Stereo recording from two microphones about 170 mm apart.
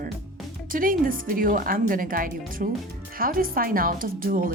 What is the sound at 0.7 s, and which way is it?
Speech, 55° right (ahead or behind).